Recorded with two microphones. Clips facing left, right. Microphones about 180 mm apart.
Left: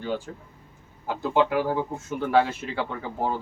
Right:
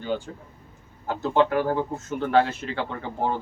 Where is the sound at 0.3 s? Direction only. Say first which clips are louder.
Even; 5° right (ahead or behind).